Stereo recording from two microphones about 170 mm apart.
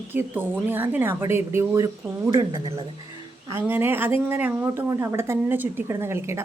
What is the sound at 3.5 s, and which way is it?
A woman's voice, 15° right (ahead or behind).